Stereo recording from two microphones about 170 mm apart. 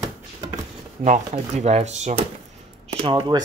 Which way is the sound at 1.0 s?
40° right (ahead or behind).